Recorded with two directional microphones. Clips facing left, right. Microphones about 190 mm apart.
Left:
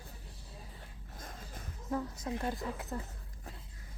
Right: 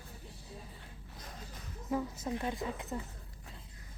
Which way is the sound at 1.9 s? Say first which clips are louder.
Right 1 dB; 5° right (ahead or behind).